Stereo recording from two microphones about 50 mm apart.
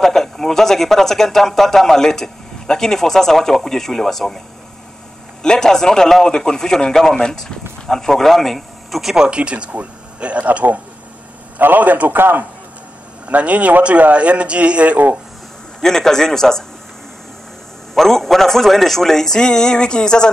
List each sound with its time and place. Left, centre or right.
0.0 s speech: centre
5.4 s speech: centre
9.1 s a man's voice: centre; by 12.4 s right
13.3 s a man's voice: right
15.8 s speech: centre
17.9 s speech: centre